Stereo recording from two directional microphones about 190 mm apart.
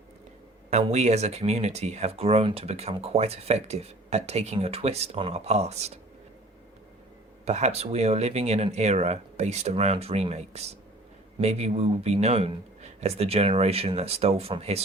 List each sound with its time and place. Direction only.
0.7 s speech: 35° right (ahead or behind)
7.4 s speech: 35° right (ahead or behind)